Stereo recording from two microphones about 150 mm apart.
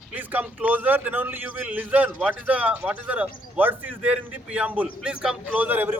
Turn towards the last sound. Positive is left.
turn(degrees=-10)  # may be behind; listen again after turning